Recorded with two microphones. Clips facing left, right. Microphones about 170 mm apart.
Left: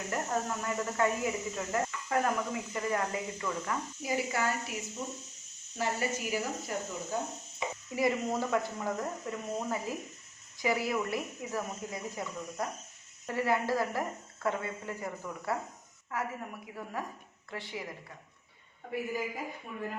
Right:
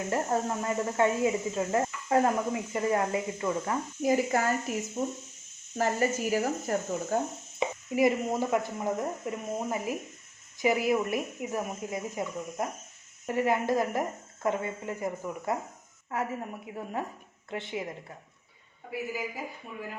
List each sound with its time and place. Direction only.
0.1 s speech: 30° right (ahead or behind)
4.0 s speech: 45° right (ahead or behind)
7.9 s speech: 20° right (ahead or behind)